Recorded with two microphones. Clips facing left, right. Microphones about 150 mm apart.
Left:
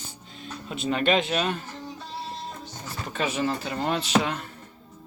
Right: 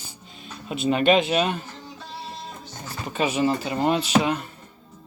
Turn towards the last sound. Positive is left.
turn(degrees=-5)  # may be behind; listen again after turning